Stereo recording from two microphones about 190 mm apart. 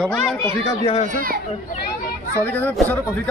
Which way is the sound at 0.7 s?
30° left (ahead or behind).